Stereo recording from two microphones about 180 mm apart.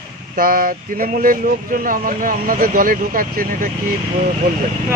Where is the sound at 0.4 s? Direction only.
50° right (ahead or behind).